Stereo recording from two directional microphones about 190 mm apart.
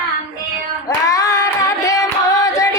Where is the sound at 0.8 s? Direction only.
20° left (ahead or behind).